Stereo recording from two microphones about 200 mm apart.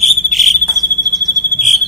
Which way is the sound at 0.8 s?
20° right (ahead or behind).